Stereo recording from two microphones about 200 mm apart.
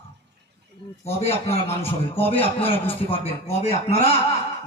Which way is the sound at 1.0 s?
30° left (ahead or behind).